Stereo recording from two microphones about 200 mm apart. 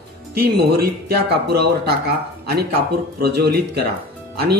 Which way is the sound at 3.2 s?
55° right (ahead or behind).